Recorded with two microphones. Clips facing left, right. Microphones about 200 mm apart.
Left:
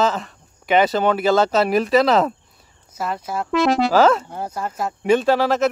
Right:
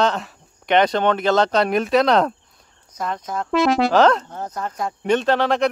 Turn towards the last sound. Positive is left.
turn(degrees=5)  # may be behind; listen again after turning